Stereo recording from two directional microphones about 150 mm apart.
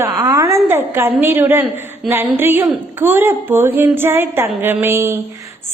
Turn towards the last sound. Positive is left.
turn(degrees=-20)  # may be behind; listen again after turning